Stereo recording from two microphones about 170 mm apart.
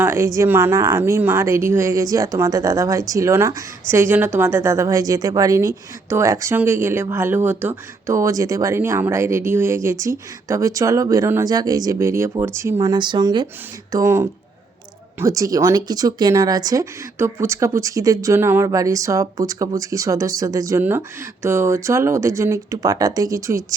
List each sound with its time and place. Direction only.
0.0 s a sound: 15° right (ahead or behind)
0.3 s speech: 15° right (ahead or behind)
12.8 s speech: 25° right (ahead or behind)